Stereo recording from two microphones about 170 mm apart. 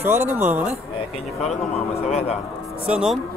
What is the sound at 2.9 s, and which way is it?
Speech, 5° right (ahead or behind).